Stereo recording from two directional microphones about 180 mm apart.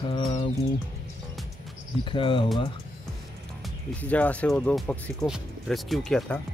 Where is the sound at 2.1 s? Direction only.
25° left (ahead or behind).